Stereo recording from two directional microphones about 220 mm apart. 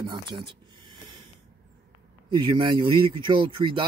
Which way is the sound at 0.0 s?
20° right (ahead or behind).